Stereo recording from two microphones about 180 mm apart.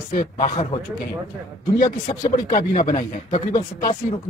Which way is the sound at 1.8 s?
45° left (ahead or behind).